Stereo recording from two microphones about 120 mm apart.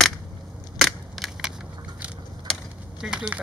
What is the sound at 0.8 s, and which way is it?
Crushing, centre (ahead or behind).